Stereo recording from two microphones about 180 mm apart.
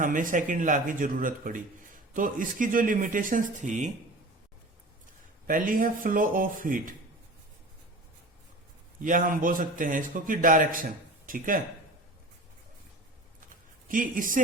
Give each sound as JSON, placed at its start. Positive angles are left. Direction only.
{"t": 0.0, "sound": "a man's voice", "side_deg": -45}
{"t": 5.5, "sound": "a man's voice", "side_deg": -50}
{"t": 9.0, "sound": "a man's voice", "side_deg": -50}
{"t": 13.8, "sound": "a man's voice", "side_deg": -50}